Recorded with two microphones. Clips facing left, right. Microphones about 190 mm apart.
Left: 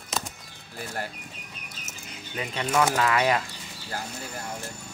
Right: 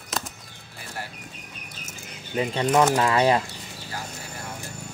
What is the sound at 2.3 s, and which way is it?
Speech, 30° right (ahead or behind).